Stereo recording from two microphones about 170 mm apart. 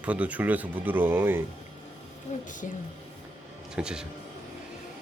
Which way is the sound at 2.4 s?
50° left (ahead or behind).